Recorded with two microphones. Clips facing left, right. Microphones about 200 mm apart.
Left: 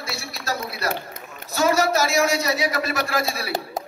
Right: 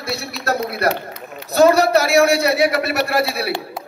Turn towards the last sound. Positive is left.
turn(degrees=-65)  # may be behind; listen again after turning